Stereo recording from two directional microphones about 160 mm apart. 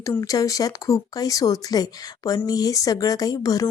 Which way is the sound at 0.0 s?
20° left (ahead or behind).